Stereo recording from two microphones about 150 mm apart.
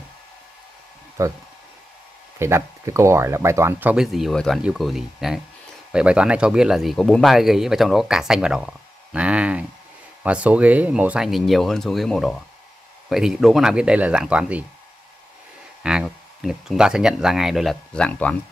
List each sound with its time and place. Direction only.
1.2 s speech: 20° right (ahead or behind)
3.9 s speech: centre (ahead or behind)
15.8 s speech: 5° right (ahead or behind)